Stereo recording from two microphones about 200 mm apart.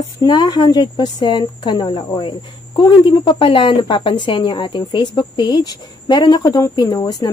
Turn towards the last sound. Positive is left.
turn(degrees=20)  # may be behind; listen again after turning